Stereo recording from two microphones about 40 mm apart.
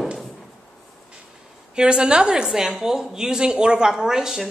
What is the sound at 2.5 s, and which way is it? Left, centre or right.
A woman's voice, centre.